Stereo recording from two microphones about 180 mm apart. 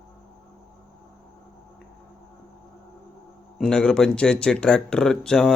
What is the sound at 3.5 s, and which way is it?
A man's voice, 5° left (ahead or behind).